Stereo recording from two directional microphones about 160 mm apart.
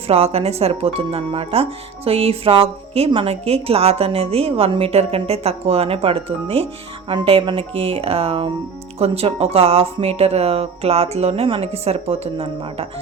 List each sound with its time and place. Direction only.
0.1 s a woman's voice: 40° right (ahead or behind)